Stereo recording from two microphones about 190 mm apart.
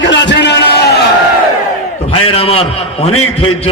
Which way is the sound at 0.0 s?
70° left (ahead or behind).